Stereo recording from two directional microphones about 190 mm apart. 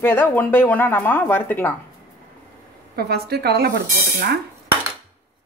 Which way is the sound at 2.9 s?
55° right (ahead or behind).